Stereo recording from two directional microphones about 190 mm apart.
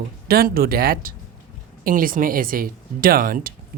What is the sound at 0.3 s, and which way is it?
Speech, 50° right (ahead or behind).